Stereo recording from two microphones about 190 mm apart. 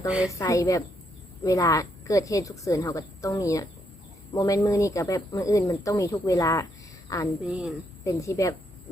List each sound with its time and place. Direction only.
0.3 s a woman's voice: 15° left (ahead or behind)
7.4 s speech: 5° right (ahead or behind)
8.0 s speech: 15° left (ahead or behind)